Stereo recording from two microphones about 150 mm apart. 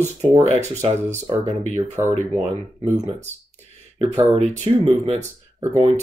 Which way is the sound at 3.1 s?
50° right (ahead or behind).